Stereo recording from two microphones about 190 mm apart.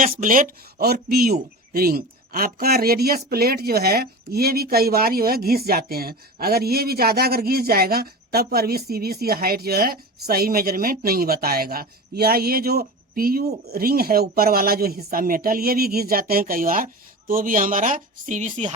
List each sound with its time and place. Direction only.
0.1 s speech: 45° right (ahead or behind)